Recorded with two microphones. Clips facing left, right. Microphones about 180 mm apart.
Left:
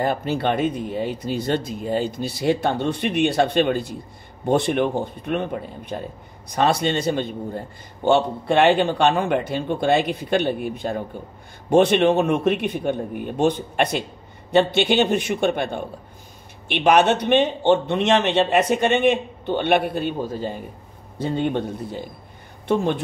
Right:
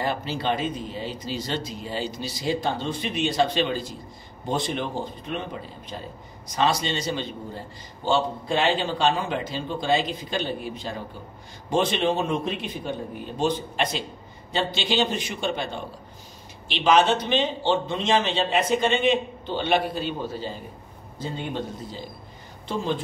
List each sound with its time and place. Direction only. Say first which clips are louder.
0.0 s a man's voice: left 5 dB; 50° left (ahead or behind)
21.2 s a man's voice: left 8 dB; 60° left (ahead or behind)